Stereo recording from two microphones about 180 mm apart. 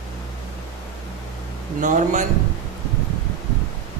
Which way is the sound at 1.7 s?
45° right (ahead or behind).